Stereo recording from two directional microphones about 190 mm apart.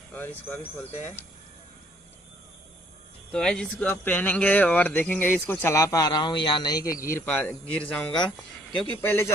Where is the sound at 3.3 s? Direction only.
5° left (ahead or behind).